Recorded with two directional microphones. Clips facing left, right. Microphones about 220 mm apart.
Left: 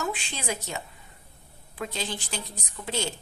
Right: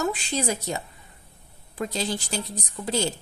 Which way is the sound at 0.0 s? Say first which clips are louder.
Right 6 dB; 40° right (ahead or behind).